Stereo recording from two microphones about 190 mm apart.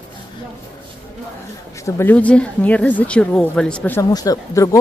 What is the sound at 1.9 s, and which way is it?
A woman's voice, 10° left (ahead or behind).